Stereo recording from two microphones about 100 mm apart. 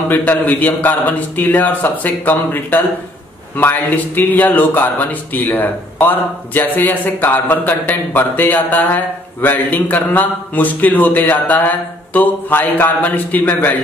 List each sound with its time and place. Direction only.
0.1 s speech: 15° left (ahead or behind)